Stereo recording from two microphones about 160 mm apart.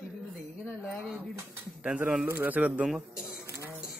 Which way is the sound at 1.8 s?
10° right (ahead or behind).